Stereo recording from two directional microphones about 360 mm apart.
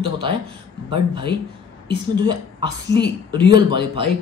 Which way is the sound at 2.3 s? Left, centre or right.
Centre.